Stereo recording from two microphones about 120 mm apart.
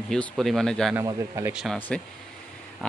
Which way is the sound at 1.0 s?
30° right (ahead or behind).